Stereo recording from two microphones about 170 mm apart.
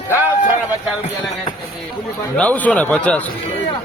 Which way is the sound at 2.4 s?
10° left (ahead or behind).